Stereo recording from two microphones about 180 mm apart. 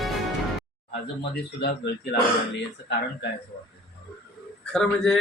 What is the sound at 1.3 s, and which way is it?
Speech, 65° left (ahead or behind).